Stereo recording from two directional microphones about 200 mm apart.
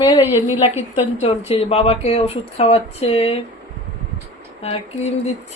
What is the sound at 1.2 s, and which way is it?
Speech, 30° left (ahead or behind).